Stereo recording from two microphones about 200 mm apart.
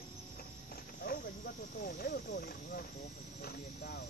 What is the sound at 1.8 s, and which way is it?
Speech, 50° left (ahead or behind).